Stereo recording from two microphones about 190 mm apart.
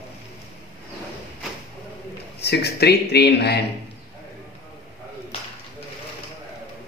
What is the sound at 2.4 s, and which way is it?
Speech, 60° left (ahead or behind).